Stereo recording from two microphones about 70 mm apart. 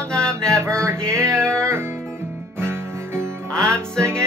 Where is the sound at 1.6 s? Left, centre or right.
Right.